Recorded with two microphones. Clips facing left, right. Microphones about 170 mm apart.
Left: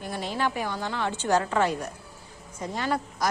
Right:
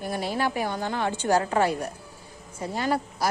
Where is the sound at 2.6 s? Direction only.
35° right (ahead or behind).